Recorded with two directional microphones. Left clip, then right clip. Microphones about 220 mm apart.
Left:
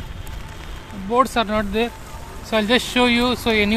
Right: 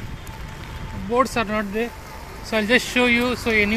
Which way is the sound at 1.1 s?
5° left (ahead or behind).